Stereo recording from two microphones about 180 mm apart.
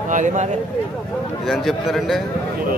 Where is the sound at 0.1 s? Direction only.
45° right (ahead or behind).